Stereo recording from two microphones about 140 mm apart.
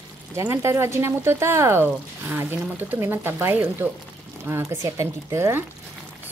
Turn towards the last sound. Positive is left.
turn(degrees=-20)  # may be behind; listen again after turning